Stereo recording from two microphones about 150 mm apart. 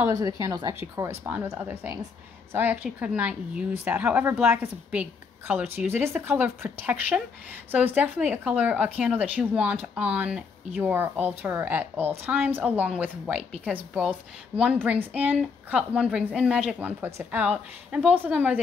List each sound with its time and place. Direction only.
0.0 s speech: 20° right (ahead or behind)
1.2 s speech: 15° right (ahead or behind)